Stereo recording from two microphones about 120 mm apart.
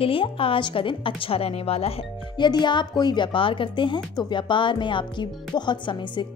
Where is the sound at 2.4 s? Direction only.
40° left (ahead or behind).